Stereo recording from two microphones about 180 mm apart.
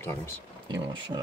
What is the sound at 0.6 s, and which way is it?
Speech, 20° right (ahead or behind).